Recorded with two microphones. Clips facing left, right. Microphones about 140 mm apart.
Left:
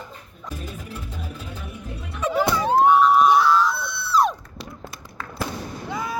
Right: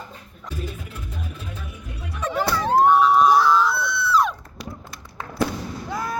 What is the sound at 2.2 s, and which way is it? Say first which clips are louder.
Music: left 3 dB; 10° left (ahead or behind).